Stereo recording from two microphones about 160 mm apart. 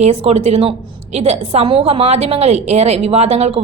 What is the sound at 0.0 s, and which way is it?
A woman's voice, 40° right (ahead or behind).